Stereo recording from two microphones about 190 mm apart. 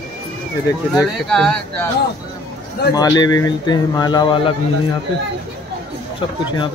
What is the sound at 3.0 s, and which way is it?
Speech, 20° left (ahead or behind).